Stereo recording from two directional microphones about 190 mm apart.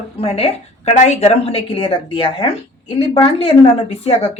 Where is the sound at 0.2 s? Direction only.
30° left (ahead or behind).